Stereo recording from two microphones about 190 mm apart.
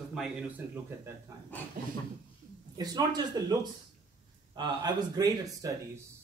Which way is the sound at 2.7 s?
20° right (ahead or behind).